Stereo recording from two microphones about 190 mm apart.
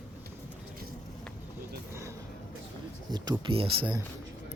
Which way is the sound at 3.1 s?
20° right (ahead or behind).